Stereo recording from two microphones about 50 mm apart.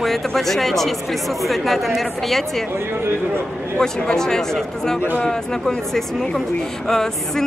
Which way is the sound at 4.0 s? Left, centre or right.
Centre.